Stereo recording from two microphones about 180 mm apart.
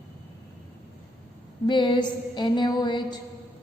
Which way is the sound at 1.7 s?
25° left (ahead or behind).